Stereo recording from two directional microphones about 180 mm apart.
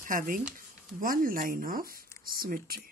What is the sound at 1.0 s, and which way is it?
Speech, 50° right (ahead or behind).